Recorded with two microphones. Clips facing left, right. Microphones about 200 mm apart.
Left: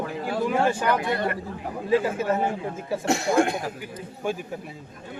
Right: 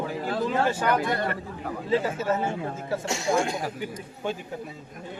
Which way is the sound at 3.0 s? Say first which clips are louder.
Left 5 dB; 60° left (ahead or behind).